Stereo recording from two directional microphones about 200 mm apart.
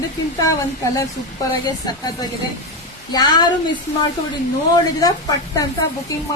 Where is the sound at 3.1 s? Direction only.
20° left (ahead or behind).